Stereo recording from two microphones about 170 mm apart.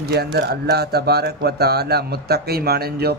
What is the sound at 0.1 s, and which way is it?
A man's voice, 75° right (ahead or behind).